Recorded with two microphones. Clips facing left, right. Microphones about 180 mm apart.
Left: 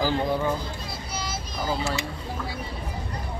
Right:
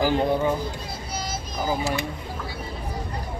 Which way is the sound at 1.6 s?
15° right (ahead or behind).